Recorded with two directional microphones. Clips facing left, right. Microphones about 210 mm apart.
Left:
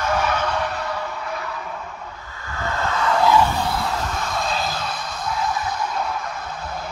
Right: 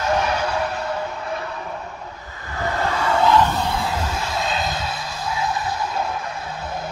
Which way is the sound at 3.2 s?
5° left (ahead or behind).